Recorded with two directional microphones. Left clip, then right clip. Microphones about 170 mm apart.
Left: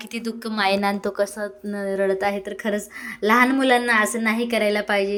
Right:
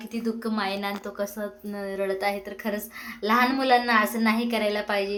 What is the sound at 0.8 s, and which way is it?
Speech, 40° left (ahead or behind).